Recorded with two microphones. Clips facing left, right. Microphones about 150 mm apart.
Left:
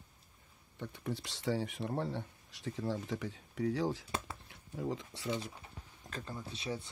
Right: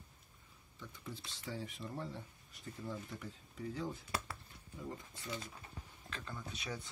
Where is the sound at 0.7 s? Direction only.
65° left (ahead or behind); by 4.0 s 85° left.